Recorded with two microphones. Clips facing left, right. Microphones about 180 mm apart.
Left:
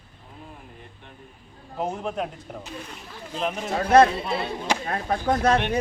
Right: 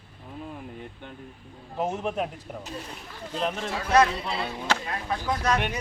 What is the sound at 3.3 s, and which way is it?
Speech, 10° left (ahead or behind).